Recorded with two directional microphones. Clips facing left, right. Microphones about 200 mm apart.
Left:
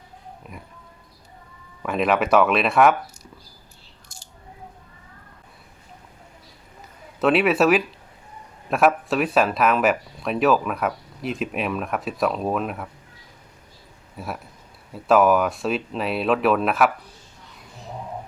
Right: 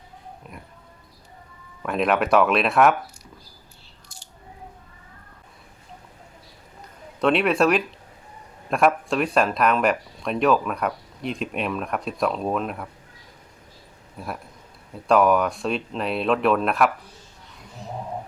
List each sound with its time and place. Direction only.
0.4 s speech: centre (ahead or behind)
1.8 s speech: centre (ahead or behind)
4.1 s a sound: 45° left (ahead or behind)
7.2 s speech: 5° left (ahead or behind)
14.2 s speech: 5° left (ahead or behind)